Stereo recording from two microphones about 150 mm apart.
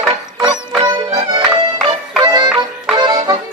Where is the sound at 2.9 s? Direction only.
30° right (ahead or behind).